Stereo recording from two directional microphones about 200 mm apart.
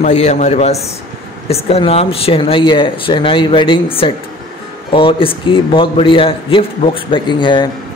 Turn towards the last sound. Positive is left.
turn(degrees=20)  # may be behind; listen again after turning